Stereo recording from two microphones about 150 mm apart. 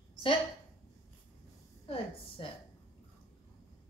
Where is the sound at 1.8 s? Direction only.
40° left (ahead or behind).